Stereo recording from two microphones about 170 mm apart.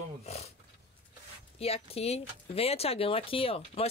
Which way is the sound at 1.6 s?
35° left (ahead or behind).